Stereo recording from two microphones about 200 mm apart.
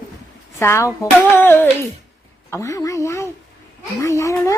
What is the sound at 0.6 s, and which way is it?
Speech, 15° left (ahead or behind).